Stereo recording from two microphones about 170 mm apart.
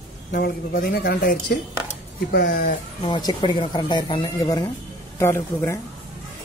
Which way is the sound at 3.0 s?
25° left (ahead or behind).